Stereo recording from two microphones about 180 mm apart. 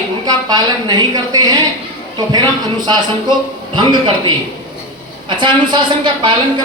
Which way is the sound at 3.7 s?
25° right (ahead or behind).